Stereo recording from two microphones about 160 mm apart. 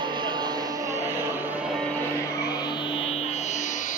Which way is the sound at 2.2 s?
20° left (ahead or behind).